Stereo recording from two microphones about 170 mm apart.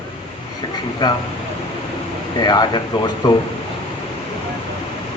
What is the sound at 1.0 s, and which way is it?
Speech, 25° left (ahead or behind).